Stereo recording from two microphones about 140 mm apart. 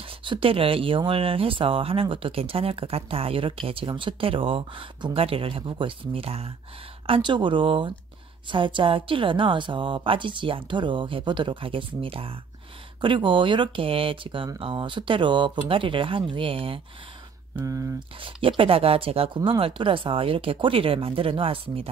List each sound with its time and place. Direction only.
0.0 s speech: 40° right (ahead or behind)
17.6 s speech: 20° right (ahead or behind)
18.2 s speech: 40° right (ahead or behind)